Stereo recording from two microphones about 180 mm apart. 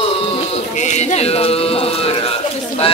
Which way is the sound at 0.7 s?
40° left (ahead or behind).